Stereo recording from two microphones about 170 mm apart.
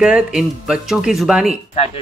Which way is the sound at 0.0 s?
5° right (ahead or behind).